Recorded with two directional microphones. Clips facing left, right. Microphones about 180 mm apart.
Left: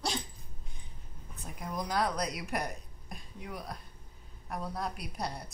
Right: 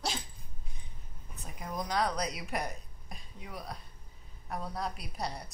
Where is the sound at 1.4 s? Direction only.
Centre (ahead or behind).